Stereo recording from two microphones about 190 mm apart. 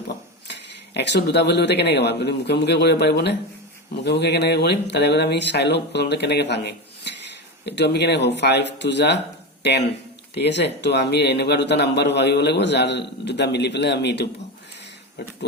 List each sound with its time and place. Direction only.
0.4 s speech: 65° left (ahead or behind)